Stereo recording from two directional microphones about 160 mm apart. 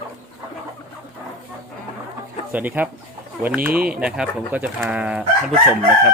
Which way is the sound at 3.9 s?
5° right (ahead or behind).